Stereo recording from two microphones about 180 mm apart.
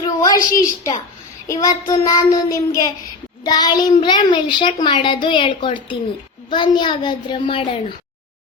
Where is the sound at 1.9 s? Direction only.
20° left (ahead or behind).